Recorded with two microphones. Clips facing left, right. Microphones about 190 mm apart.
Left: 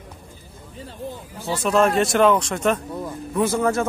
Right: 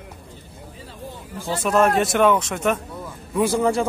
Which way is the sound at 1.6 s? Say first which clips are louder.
Even; 5° right (ahead or behind).